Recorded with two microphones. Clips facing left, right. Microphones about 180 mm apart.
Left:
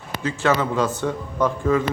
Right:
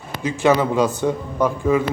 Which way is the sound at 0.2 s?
15° right (ahead or behind).